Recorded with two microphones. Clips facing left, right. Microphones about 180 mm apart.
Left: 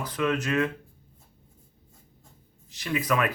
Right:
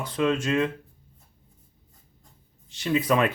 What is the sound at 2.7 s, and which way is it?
Speech, 25° right (ahead or behind).